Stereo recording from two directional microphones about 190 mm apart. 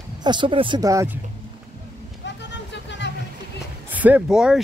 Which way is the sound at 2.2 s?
65° left (ahead or behind).